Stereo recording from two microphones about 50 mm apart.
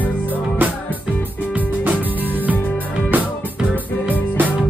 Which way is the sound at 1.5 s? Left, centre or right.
Right.